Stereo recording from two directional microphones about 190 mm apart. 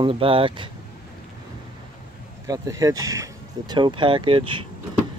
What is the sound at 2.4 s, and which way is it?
Speech, 20° right (ahead or behind).